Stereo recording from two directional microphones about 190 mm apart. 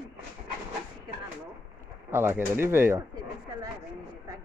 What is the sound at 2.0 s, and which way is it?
Speech, 10° right (ahead or behind).